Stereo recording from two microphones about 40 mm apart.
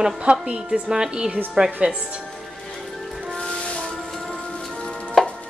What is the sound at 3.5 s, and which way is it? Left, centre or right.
Music, left.